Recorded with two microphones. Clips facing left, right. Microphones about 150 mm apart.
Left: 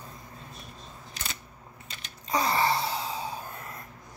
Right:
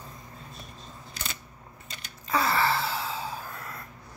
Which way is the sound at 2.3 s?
20° left (ahead or behind).